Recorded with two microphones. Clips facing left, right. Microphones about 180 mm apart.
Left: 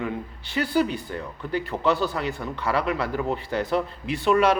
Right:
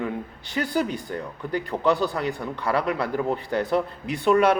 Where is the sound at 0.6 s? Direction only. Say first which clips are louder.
Left 3 dB; 15° right (ahead or behind).